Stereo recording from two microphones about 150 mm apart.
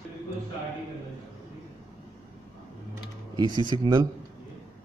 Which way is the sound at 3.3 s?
30° right (ahead or behind).